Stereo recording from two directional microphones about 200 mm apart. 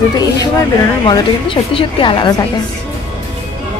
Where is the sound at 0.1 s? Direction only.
20° left (ahead or behind).